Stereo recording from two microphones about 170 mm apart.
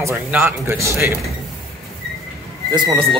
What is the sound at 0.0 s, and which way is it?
Speech, 10° right (ahead or behind).